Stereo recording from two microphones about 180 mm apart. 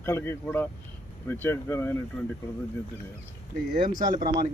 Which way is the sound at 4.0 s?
45° right (ahead or behind).